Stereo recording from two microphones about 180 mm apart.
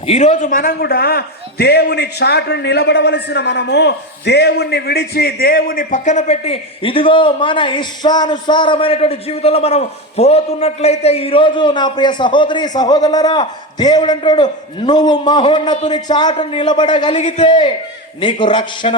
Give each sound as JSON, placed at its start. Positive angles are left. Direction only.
{"t": 0.0, "sound": "a man's voice", "side_deg": 35}
{"t": 17.2, "sound": "a man's voice", "side_deg": 40}
{"t": 17.4, "sound": "a man's voice", "side_deg": 25}